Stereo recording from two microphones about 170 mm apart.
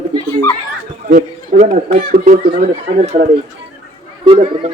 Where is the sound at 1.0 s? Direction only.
45° right (ahead or behind).